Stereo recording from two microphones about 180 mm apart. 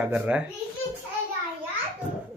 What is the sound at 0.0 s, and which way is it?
Speech, 5° right (ahead or behind).